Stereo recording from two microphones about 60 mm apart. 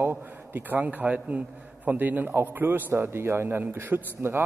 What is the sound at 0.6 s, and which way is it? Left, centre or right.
A man's voice, right.